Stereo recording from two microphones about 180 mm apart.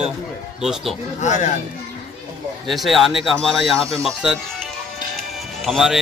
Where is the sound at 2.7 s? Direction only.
Centre (ahead or behind).